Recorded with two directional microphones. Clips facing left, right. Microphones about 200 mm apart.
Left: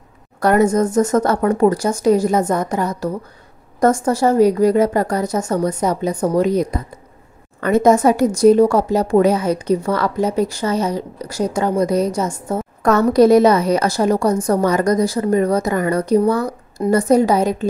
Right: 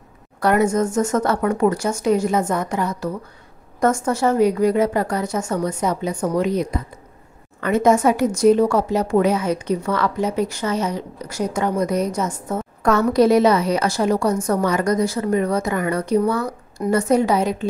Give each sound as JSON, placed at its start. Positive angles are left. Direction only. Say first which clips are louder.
{"t": 0.4, "sound": "a woman's voice", "louder": "left 3 dB", "side_deg": 40}